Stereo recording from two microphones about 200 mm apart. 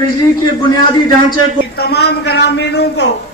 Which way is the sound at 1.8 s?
55° left (ahead or behind).